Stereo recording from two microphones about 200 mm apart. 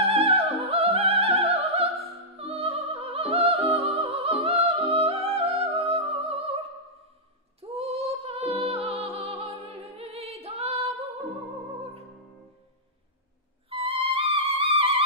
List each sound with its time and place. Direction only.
0.0 s music: 30° right (ahead or behind)
7.7 s music: 30° right (ahead or behind)
13.7 s music: 30° right (ahead or behind)